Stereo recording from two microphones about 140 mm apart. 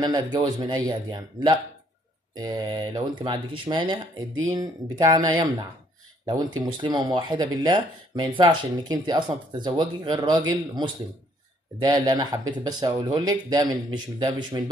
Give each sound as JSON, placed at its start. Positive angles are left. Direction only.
{"t": 0.0, "sound": "speech", "side_deg": -30}